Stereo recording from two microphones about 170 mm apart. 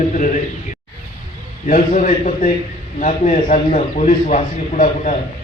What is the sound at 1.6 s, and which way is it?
A man's voice, 50° left (ahead or behind).